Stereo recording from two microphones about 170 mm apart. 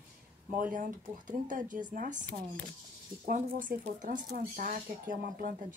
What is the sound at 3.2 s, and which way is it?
Speech, 55° right (ahead or behind).